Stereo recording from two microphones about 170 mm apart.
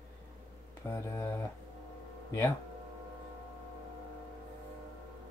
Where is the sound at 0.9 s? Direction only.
15° left (ahead or behind).